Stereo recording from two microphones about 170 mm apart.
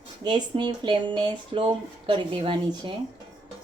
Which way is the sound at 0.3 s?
25° right (ahead or behind).